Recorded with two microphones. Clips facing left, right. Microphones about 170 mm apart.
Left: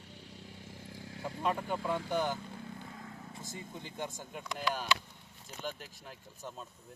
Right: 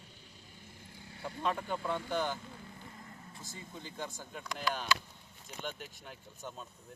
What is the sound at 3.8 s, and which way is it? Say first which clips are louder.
Speech: left 1 dB; 20° left (ahead or behind).